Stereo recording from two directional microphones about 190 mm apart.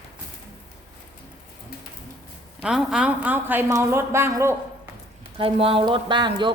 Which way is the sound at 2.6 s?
5° right (ahead or behind).